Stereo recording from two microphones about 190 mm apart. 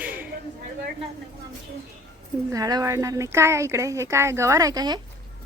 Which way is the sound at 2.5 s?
20° right (ahead or behind).